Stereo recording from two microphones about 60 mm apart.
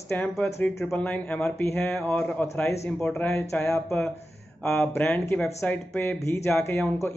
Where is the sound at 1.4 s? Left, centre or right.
Left.